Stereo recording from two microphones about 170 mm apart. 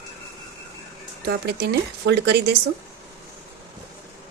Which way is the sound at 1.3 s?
70° right (ahead or behind).